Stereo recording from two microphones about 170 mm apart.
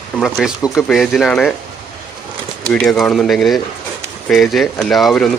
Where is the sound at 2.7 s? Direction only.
5° left (ahead or behind).